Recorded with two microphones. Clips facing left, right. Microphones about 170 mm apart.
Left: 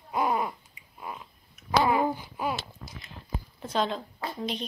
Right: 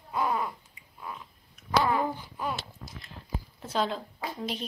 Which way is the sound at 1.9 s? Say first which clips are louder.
Left 3 dB; 15° left (ahead or behind).